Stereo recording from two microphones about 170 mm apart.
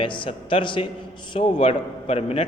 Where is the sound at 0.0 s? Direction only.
30° left (ahead or behind).